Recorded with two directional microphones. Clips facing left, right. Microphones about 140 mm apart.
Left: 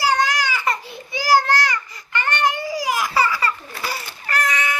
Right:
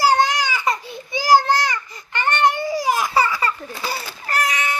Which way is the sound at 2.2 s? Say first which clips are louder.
Right 4 dB; 25° right (ahead or behind).